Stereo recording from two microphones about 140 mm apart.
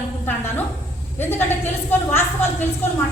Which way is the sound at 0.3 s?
15° left (ahead or behind).